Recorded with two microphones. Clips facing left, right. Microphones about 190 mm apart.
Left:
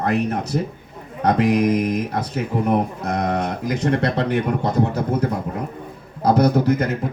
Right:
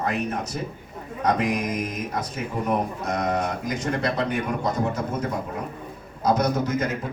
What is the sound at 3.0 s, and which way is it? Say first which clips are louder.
Speech: left 3 dB; 60° left (ahead or behind).